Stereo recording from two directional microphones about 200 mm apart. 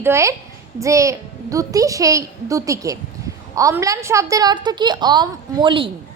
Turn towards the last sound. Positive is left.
turn(degrees=-25)  # may be behind; listen again after turning